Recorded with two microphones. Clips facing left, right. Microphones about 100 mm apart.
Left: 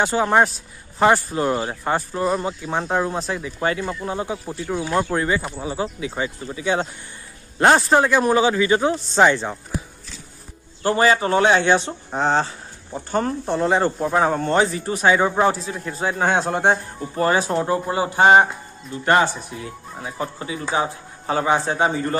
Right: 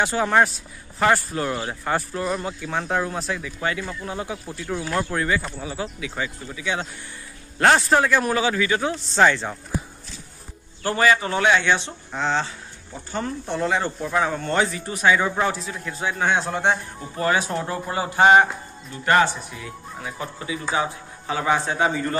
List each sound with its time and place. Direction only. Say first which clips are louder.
0.2 s speech: left 1 dB; 20° left (ahead or behind)
4.6 s speech: left 4 dB; 15° left (ahead or behind); by 6.9 s 40° left (ahead or behind)
7.5 s speech: left 2 dB; 25° left (ahead or behind)
10.8 s speech: left 2 dB; 30° left (ahead or behind)
13.6 s speech: left 4 dB; 30° left (ahead or behind)
21.6 s speech: left 2 dB; 30° left (ahead or behind)